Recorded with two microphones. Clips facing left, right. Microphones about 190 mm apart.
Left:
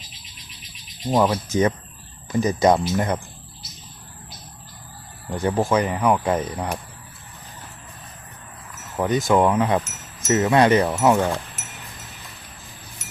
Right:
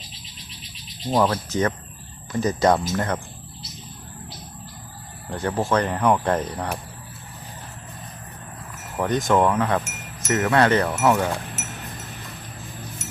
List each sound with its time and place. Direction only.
1.1 s speech: 5° left (ahead or behind)
5.3 s speech: 10° left (ahead or behind)
9.0 s speech: 10° left (ahead or behind)